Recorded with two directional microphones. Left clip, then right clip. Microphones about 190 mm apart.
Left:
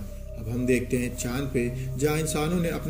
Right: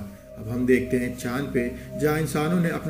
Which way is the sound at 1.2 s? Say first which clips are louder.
Right 2 dB; 30° left (ahead or behind).